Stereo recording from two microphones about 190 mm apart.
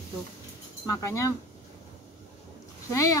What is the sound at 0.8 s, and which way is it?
Speech, 15° left (ahead or behind).